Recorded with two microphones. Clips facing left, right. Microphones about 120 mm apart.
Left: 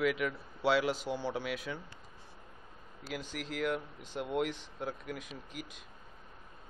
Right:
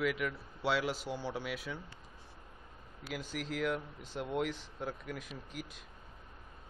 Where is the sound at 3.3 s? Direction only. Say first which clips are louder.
Even; centre (ahead or behind).